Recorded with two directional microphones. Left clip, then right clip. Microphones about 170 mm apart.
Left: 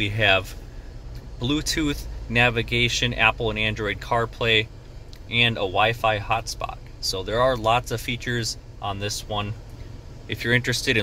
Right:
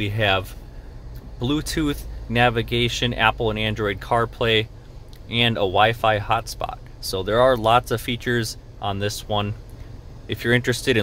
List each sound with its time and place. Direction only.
0.0 s speech: 25° right (ahead or behind); by 9.5 s 55° right (ahead or behind)
10.2 s speech: 40° right (ahead or behind)